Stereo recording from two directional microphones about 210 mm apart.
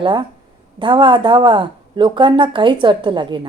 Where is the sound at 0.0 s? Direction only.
20° right (ahead or behind).